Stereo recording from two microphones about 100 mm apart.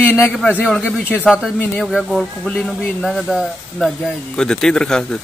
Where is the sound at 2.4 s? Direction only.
10° left (ahead or behind).